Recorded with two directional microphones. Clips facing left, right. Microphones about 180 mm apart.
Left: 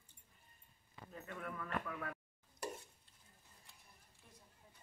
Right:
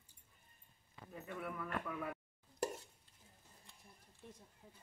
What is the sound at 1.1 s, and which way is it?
Speech, 10° right (ahead or behind).